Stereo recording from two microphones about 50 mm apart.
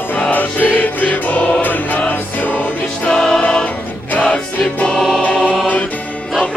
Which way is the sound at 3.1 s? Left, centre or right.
Centre.